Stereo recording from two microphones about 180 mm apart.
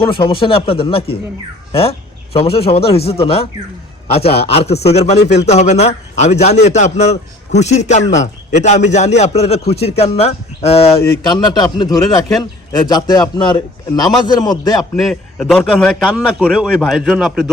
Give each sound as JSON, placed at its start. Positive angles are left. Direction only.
{"t": 0.2, "sound": "a man's voice", "side_deg": 30}
{"t": 11.3, "sound": "speech", "side_deg": 25}
{"t": 14.8, "sound": "a man's voice", "side_deg": 5}